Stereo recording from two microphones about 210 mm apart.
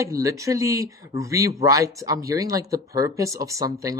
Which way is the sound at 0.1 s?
15° right (ahead or behind).